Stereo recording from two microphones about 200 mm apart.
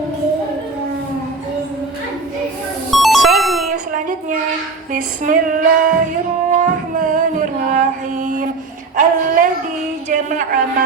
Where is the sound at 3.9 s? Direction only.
40° right (ahead or behind).